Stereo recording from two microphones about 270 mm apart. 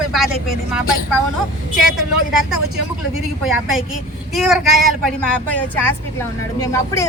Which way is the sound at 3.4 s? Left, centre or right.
Centre.